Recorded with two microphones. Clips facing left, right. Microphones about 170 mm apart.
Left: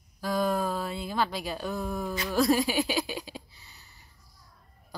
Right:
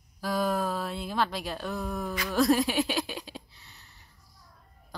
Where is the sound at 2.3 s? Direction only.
Centre (ahead or behind).